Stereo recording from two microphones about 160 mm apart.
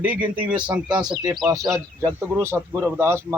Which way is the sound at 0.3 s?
5° right (ahead or behind).